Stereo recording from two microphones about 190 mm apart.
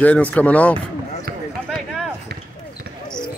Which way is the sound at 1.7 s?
Centre (ahead or behind).